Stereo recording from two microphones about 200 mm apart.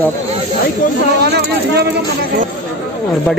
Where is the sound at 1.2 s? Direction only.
55° right (ahead or behind).